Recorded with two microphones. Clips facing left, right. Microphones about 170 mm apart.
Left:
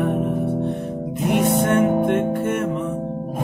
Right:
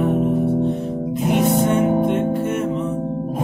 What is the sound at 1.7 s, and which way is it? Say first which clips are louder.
Music: even; 55° left (ahead or behind).